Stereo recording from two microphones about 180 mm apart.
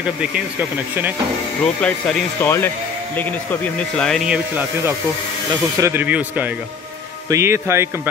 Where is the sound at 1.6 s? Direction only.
5° left (ahead or behind).